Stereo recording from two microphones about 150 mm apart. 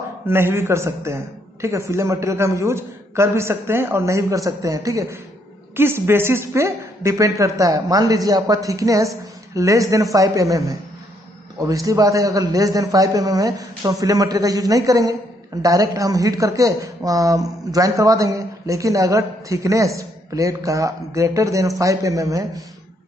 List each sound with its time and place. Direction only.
0.3 s speech: 15° right (ahead or behind)